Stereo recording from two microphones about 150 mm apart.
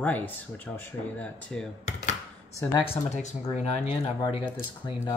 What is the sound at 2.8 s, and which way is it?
Speech, 45° left (ahead or behind).